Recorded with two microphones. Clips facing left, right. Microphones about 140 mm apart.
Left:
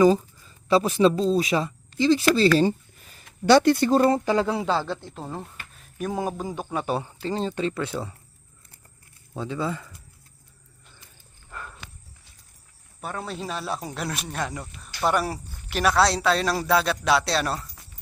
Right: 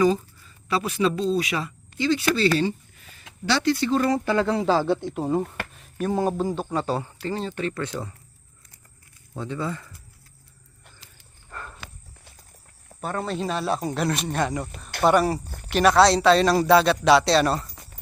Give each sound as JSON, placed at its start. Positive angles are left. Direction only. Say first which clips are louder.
{"t": 0.7, "sound": "speech", "louder": "left 5 dB", "side_deg": 30}
{"t": 3.9, "sound": "speech", "louder": "left 3 dB", "side_deg": 30}
{"t": 4.3, "sound": "speech", "louder": "right 1 dB", "side_deg": 10}
{"t": 4.6, "sound": "speech", "louder": "right 5 dB", "side_deg": -10}
{"t": 6.8, "sound": "speech", "louder": "even", "side_deg": 20}
{"t": 9.3, "sound": "speech", "louder": "left 1 dB", "side_deg": 10}
{"t": 13.2, "sound": "a man's voice", "louder": "right 6 dB", "side_deg": 5}